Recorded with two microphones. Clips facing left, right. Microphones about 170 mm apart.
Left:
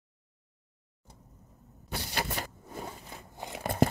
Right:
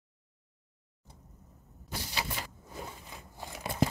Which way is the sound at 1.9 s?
50° left (ahead or behind).